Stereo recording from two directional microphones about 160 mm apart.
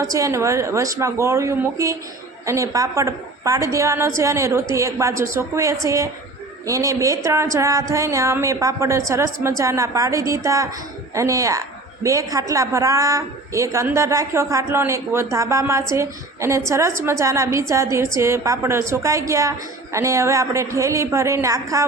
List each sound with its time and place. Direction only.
0.0 s a woman's voice: 20° right (ahead or behind)